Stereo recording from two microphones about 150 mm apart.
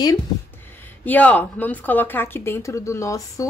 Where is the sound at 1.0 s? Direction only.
10° left (ahead or behind).